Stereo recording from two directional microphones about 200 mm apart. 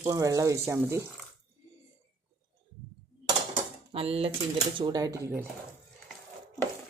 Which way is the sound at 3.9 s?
30° right (ahead or behind).